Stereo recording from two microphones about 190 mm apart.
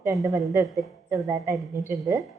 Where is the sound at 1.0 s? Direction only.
15° right (ahead or behind).